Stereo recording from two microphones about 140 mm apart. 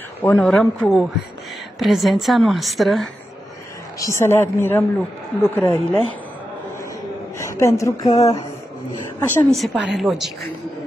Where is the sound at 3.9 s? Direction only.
20° left (ahead or behind).